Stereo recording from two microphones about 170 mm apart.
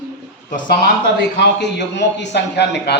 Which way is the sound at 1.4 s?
90° left.